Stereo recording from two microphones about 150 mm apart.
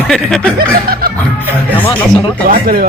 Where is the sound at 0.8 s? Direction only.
80° right.